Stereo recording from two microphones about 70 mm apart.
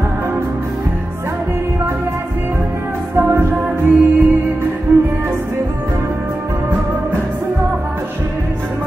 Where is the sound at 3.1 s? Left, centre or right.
Right.